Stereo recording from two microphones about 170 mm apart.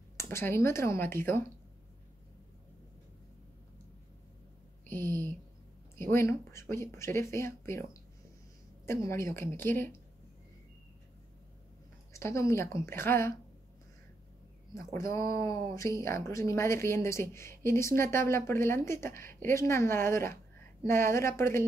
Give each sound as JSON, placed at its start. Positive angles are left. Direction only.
{"t": 0.2, "sound": "speech", "side_deg": 15}
{"t": 4.8, "sound": "a sound", "side_deg": 10}
{"t": 5.9, "sound": "speech", "side_deg": 15}
{"t": 12.1, "sound": "speech", "side_deg": 15}
{"t": 14.7, "sound": "speech", "side_deg": 15}